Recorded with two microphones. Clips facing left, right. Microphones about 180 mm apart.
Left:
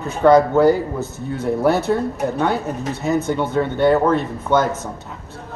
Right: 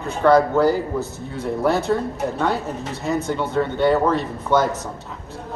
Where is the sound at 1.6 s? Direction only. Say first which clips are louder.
Left 2 dB; 5° left (ahead or behind).